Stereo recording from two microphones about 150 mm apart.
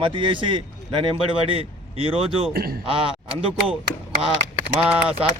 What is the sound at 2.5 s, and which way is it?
Speech, 90° right.